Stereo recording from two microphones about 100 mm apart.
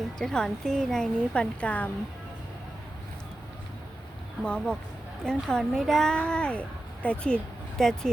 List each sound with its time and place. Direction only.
0.2 s speech: 5° left (ahead or behind)
4.4 s speech: 10° left (ahead or behind)